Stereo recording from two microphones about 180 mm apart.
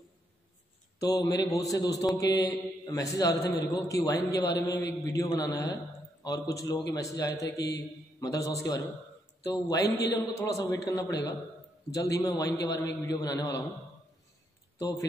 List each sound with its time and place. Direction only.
0.9 s speech: 20° left (ahead or behind)
14.8 s speech: 20° left (ahead or behind)